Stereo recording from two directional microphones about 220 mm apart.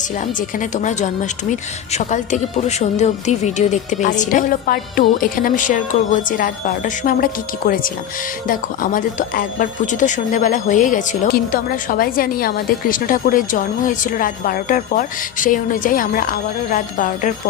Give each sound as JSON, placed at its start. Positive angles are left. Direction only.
{"t": 0.3, "sound": "speech", "side_deg": 35}